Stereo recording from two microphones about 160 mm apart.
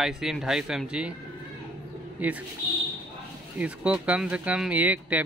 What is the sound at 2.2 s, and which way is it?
Speech, 10° right (ahead or behind).